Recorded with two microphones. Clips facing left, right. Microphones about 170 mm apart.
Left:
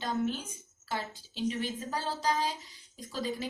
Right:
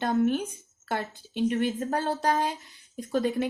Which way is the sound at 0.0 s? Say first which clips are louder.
Right 8 dB; 60° right (ahead or behind).